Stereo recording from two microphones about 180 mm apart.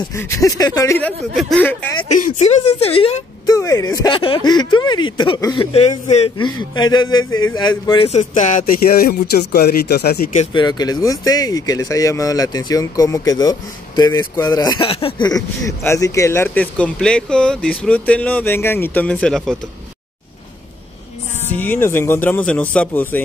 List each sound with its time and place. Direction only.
0.0 s speech: 15° left (ahead or behind)
1.3 s speech: centre (ahead or behind)
1.6 s speech: 10° left (ahead or behind)
2.0 s speech: 45° left (ahead or behind)
3.4 s speech: 20° left (ahead or behind)
8.1 s speech: 40° left (ahead or behind); by 10.3 s 60° left (ahead or behind)
10.5 s speech: 25° left (ahead or behind); by 19.5 s 5° left (ahead or behind)
21.5 s speech: 10° left (ahead or behind)